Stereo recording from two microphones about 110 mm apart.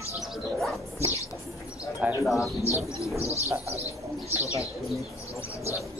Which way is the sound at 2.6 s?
30° left (ahead or behind).